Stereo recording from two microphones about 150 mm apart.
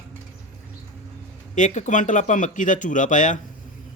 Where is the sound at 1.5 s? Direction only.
55° left (ahead or behind).